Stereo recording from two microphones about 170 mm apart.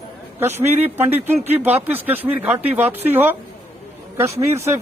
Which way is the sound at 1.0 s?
10° right (ahead or behind).